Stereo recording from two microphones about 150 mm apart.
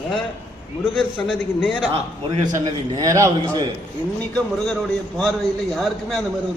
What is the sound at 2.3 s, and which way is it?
A man's voice, 25° right (ahead or behind).